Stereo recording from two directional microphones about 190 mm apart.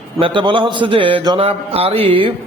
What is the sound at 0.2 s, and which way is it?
A man's voice, 25° right (ahead or behind).